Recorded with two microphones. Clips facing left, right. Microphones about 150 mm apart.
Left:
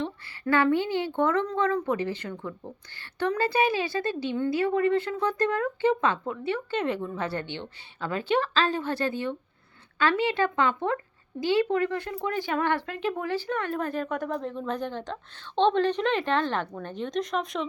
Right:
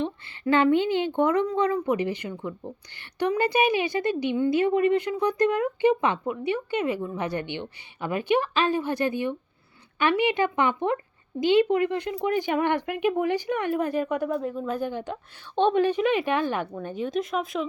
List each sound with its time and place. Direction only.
0.0 s a woman's voice: 20° right (ahead or behind); by 17.7 s 5° right (ahead or behind)